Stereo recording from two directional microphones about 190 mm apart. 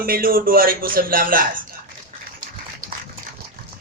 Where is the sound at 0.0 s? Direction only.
50° right (ahead or behind).